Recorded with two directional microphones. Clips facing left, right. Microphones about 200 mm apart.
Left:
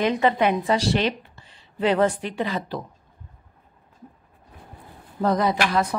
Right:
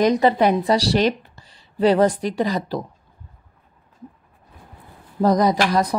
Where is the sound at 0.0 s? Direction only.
40° right (ahead or behind).